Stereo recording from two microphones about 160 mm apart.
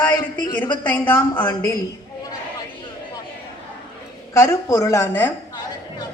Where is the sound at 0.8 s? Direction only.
10° left (ahead or behind).